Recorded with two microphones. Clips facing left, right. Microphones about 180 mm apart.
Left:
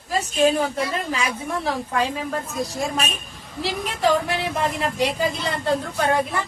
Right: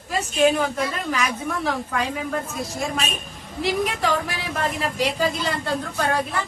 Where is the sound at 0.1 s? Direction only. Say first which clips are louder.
Even; 35° left (ahead or behind).